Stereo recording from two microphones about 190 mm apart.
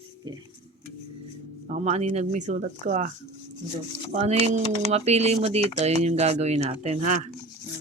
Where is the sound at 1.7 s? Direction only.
35° right (ahead or behind).